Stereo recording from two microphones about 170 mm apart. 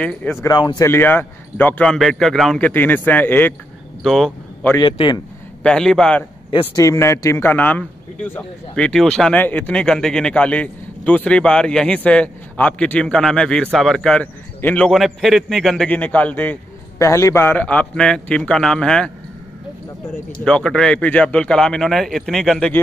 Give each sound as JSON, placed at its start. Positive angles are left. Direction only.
{"t": 0.0, "sound": "speech", "side_deg": 10}
{"t": 0.8, "sound": "a man's voice", "side_deg": 10}
{"t": 4.7, "sound": "speech", "side_deg": 30}
{"t": 5.6, "sound": "speech", "side_deg": 5}
{"t": 6.5, "sound": "speech", "side_deg": 30}
{"t": 6.8, "sound": "a man's voice", "side_deg": 15}
{"t": 20.4, "sound": "speech", "side_deg": 5}